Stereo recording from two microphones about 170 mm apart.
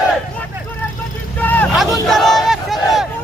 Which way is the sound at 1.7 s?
Centre (ahead or behind).